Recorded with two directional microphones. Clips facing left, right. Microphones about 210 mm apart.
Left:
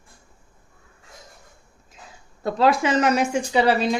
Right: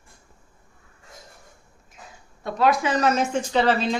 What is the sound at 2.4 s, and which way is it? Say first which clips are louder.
Speech: left 2 dB; 30° left (ahead or behind).